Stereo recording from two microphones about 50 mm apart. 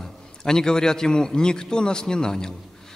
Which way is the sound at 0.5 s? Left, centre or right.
Centre.